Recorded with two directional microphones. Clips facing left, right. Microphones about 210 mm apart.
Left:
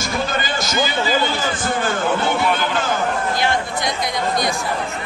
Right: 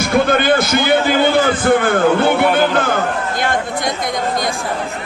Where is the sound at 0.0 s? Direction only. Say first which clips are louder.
Right 9 dB; 60° right (ahead or behind).